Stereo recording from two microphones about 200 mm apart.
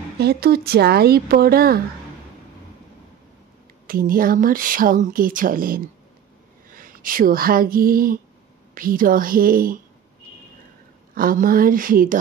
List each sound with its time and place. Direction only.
0.2 s speech: 50° right (ahead or behind)
3.8 s speech: 45° right (ahead or behind)
11.1 s speech: 45° right (ahead or behind)